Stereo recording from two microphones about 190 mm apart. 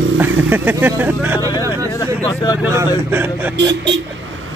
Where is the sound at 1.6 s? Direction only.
15° right (ahead or behind).